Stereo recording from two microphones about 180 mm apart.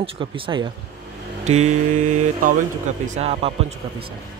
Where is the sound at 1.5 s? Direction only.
40° right (ahead or behind).